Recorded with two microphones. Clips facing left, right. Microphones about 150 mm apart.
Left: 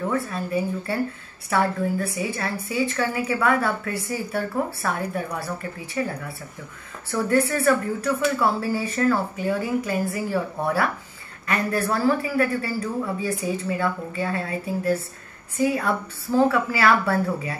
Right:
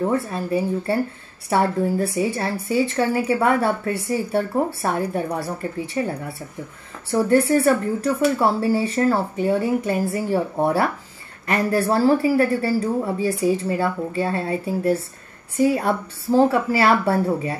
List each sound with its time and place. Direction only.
0.0 s speech: 30° right (ahead or behind)
1.5 s a woman's voice: 30° right (ahead or behind)